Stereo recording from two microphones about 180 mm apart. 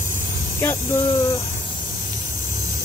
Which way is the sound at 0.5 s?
15° left (ahead or behind).